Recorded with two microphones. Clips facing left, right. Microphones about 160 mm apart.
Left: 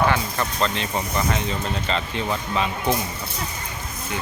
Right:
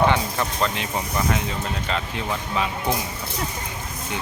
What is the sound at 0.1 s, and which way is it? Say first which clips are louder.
Speech: right 1 dB; 10° right (ahead or behind).